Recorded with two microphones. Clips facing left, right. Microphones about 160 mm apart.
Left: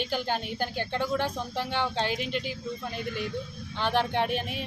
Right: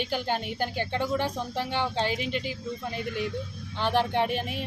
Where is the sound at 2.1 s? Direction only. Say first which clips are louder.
Right 1 dB; 50° left (ahead or behind).